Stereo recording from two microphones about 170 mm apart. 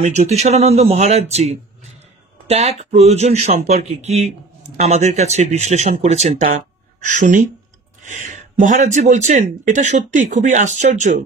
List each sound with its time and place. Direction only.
0.0 s speech: 45° right (ahead or behind)